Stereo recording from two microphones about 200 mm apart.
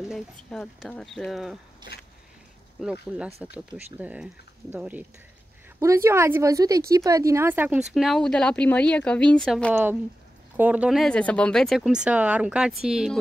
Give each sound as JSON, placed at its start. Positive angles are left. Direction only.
{"t": 0.0, "sound": "speech", "side_deg": 0}
{"t": 2.8, "sound": "speech", "side_deg": -5}
{"t": 10.5, "sound": "speech", "side_deg": -10}